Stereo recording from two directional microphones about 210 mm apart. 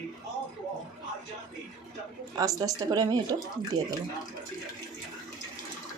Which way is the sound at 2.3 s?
15° right (ahead or behind).